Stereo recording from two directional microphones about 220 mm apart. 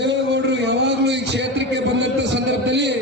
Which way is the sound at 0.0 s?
50° right (ahead or behind).